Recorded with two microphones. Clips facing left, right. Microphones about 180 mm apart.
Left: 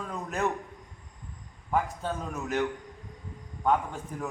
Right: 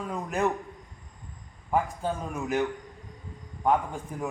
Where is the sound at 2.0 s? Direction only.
10° right (ahead or behind).